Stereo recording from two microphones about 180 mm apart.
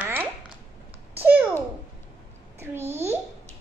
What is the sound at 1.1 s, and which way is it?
Babbling, 10° right (ahead or behind).